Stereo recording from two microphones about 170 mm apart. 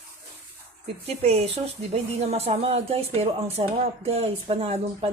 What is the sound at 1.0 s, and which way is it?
A woman's voice, 35° right (ahead or behind).